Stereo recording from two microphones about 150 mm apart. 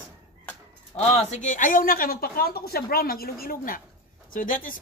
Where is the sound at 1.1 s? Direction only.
50° left (ahead or behind).